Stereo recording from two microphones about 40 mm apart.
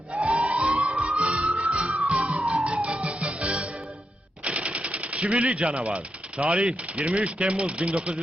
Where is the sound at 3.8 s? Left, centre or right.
Right.